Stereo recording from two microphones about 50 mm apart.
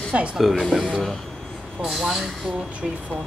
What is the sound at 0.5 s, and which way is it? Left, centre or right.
Speech, centre.